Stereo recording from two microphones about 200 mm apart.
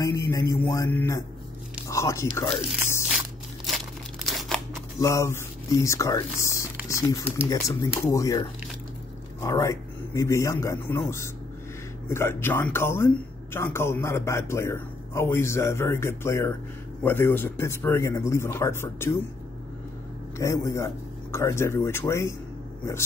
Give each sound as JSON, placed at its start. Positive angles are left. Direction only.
{"t": 0.0, "sound": "speech", "side_deg": 15}
{"t": 2.5, "sound": "biting", "side_deg": 5}
{"t": 4.3, "sound": "scissors", "side_deg": 0}
{"t": 4.9, "sound": "speech", "side_deg": 15}
{"t": 20.3, "sound": "speech", "side_deg": 15}